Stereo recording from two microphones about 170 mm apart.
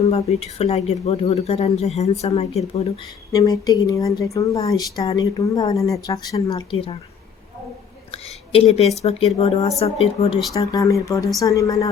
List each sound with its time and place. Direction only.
0.0 s speech: 35° left (ahead or behind)
3.3 s a woman's voice: 20° left (ahead or behind)
8.1 s a sound: 35° left (ahead or behind)
9.0 s speech: 35° left (ahead or behind)
10.8 s a woman's voice: 20° left (ahead or behind)